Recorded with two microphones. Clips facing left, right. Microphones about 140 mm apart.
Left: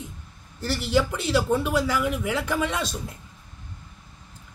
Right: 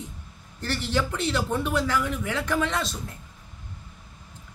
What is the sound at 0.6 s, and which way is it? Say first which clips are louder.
A man's voice: left 4 dB; 5° left (ahead or behind).